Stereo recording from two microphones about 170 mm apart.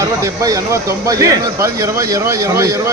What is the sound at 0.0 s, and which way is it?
Speech, 20° right (ahead or behind).